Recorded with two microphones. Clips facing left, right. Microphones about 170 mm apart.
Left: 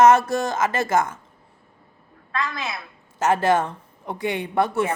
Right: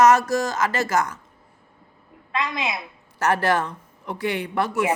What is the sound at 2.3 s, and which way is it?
Speech, 20° right (ahead or behind).